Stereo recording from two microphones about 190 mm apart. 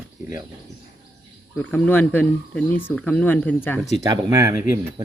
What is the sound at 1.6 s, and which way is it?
Speech, 5° left (ahead or behind).